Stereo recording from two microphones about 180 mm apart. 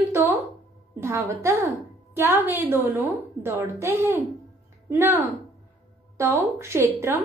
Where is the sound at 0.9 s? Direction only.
15° right (ahead or behind).